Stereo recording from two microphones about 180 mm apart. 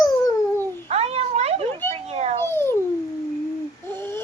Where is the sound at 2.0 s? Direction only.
35° right (ahead or behind).